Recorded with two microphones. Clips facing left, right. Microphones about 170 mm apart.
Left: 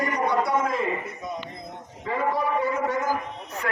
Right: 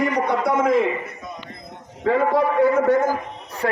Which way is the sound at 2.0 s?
75° right (ahead or behind).